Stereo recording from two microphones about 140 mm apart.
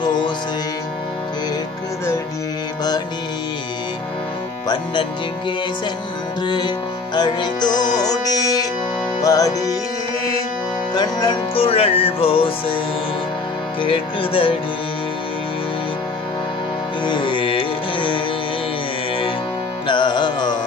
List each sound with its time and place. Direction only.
0.0 s music: 35° left (ahead or behind)
6.4 s music: 30° left (ahead or behind)
11.0 s music: 30° left (ahead or behind)
11.5 s music: 40° left (ahead or behind)
13.7 s music: 40° left (ahead or behind)
17.0 s music: 35° left (ahead or behind)
19.9 s music: 35° left (ahead or behind)